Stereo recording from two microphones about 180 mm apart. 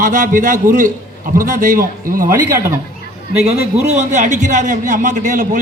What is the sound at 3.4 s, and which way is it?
A man's voice, 35° right (ahead or behind).